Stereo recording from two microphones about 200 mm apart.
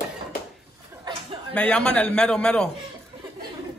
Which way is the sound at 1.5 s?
5° left (ahead or behind).